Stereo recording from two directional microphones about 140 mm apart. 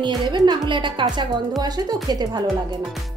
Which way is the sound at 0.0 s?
35° right (ahead or behind).